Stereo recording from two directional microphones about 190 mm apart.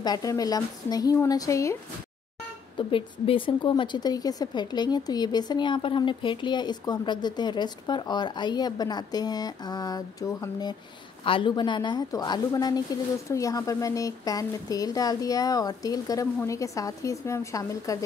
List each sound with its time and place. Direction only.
0.0 s speech: 20° left (ahead or behind)
2.8 s speech: 25° left (ahead or behind)